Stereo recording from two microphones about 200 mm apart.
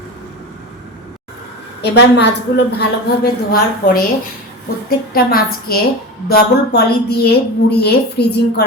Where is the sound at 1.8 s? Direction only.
60° left (ahead or behind).